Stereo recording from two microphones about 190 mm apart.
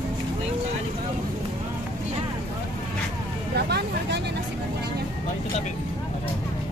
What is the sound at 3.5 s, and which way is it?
Vehicle, 60° right (ahead or behind).